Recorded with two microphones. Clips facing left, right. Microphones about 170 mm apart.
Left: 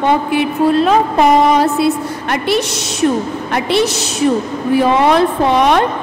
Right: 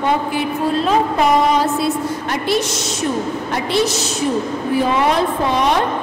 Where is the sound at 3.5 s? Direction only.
70° left (ahead or behind).